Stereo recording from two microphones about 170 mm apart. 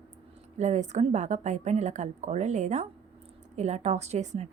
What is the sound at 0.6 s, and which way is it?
A woman's voice, 45° right (ahead or behind).